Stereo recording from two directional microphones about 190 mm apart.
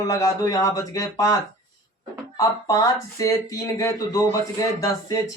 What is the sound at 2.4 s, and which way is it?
Speech, 15° left (ahead or behind).